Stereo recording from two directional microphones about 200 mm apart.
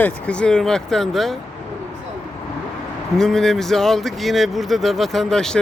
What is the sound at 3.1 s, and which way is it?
Speech, centre (ahead or behind).